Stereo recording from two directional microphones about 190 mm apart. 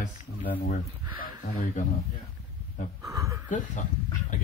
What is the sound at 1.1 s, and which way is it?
Speech, 50° left (ahead or behind).